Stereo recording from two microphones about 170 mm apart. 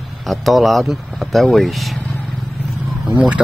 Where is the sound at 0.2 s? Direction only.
Centre (ahead or behind).